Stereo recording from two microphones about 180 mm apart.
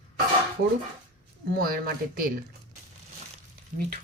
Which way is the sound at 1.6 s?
55° right (ahead or behind).